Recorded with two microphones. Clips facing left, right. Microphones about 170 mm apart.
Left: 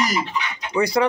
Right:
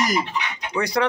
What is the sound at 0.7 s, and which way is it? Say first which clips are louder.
Speech: left 3 dB; 10° left (ahead or behind).